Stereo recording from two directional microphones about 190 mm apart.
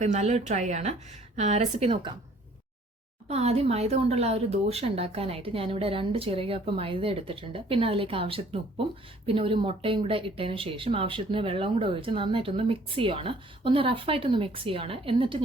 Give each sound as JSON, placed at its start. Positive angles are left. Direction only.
{"t": 0.0, "sound": "a woman's voice", "side_deg": -40}
{"t": 3.2, "sound": "speech", "side_deg": -35}